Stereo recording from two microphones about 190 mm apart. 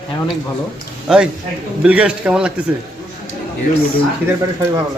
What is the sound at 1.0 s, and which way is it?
A man's voice, 5° right (ahead or behind).